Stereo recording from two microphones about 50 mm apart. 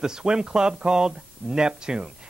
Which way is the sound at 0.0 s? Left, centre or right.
Centre.